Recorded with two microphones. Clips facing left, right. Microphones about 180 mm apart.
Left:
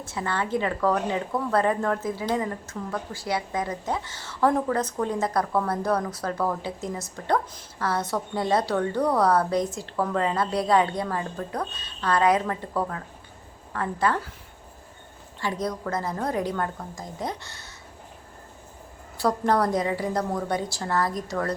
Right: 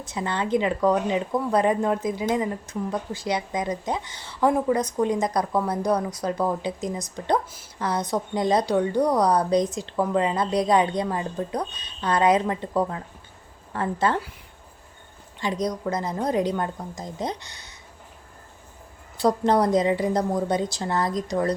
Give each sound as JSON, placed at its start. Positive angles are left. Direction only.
{"t": 0.0, "sound": "a woman's voice", "side_deg": -20}
{"t": 15.4, "sound": "a woman's voice", "side_deg": -20}
{"t": 19.1, "sound": "a woman's voice", "side_deg": -20}